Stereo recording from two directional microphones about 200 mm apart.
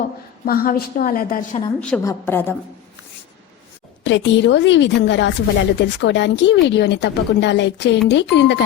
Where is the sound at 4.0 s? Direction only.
65° left (ahead or behind).